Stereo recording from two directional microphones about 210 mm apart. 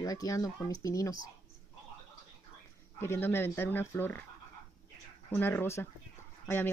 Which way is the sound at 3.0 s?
10° left (ahead or behind).